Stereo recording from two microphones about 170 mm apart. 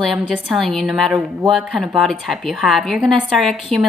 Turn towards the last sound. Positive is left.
turn(degrees=0)  # may be behind; listen again after turning